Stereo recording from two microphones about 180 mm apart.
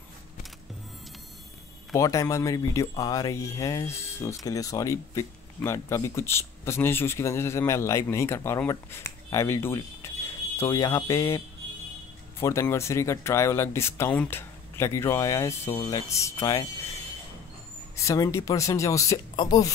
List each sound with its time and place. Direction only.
2.0 s speech: 20° left (ahead or behind)
17.9 s speech: 20° left (ahead or behind)